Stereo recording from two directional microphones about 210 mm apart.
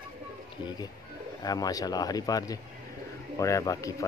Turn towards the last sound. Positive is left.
turn(degrees=15)  # may be behind; listen again after turning